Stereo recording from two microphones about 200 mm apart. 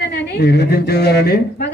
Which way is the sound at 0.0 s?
55° left (ahead or behind).